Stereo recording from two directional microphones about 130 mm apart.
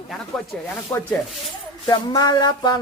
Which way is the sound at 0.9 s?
15° left (ahead or behind).